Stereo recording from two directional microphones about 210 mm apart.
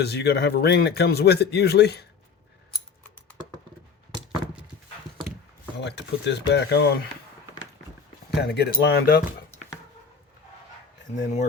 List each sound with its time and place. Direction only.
0.0 s speech: 50° left (ahead or behind)
5.8 s speech: 55° left (ahead or behind)
8.4 s speech: 50° left (ahead or behind)
11.2 s speech: 35° left (ahead or behind)